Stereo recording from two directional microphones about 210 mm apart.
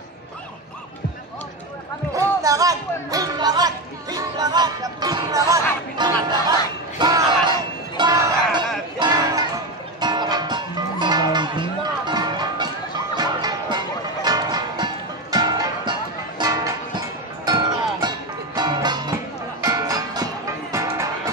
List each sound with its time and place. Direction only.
2.1 s music: 15° right (ahead or behind)
7.0 s a sound: 20° right (ahead or behind)
8.0 s music: 20° right (ahead or behind)